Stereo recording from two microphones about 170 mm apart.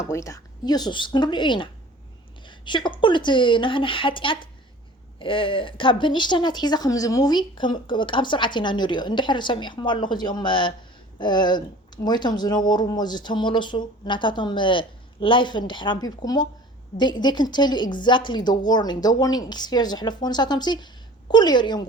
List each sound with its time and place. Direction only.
0.0 s speech: 15° left (ahead or behind)